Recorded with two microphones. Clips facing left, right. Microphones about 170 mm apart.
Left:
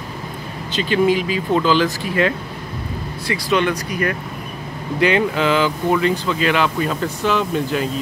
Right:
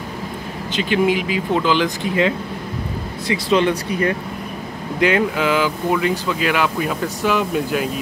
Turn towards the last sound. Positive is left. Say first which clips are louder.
# even
turn(degrees=-5)  # may be behind; listen again after turning